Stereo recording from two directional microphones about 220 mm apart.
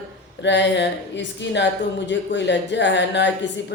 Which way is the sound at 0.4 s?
55° left (ahead or behind).